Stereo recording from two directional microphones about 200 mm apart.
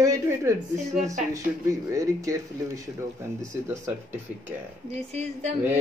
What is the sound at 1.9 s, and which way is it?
Speech, 15° right (ahead or behind).